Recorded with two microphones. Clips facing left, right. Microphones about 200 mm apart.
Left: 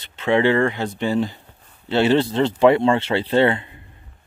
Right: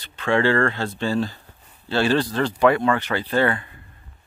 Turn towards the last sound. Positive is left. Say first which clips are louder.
# left 4 dB
turn(degrees=25)  # may be behind; listen again after turning